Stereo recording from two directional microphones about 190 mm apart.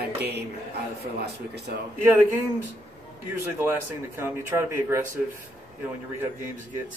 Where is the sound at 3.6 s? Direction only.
15° right (ahead or behind).